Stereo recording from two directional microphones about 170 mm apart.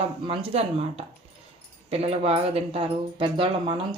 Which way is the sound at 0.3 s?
35° right (ahead or behind).